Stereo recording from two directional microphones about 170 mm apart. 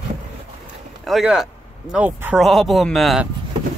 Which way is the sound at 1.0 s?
Centre (ahead or behind).